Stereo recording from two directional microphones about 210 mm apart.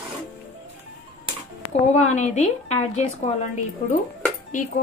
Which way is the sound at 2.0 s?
35° left (ahead or behind).